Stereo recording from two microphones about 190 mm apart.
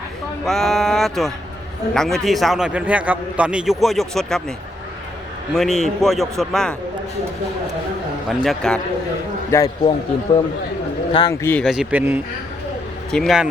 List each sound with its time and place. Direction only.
0.4 s a man's voice: centre (ahead or behind)
5.5 s a man's voice: centre (ahead or behind)
8.3 s a man's voice: centre (ahead or behind)
9.5 s speech: 15° left (ahead or behind)
11.1 s speech: 25° left (ahead or behind)
11.4 s speech: 10° left (ahead or behind)
11.7 s speech: 5° right (ahead or behind)
13.1 s speech: centre (ahead or behind)